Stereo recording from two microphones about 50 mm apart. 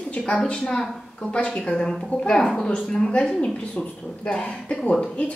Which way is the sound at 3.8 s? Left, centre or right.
Left.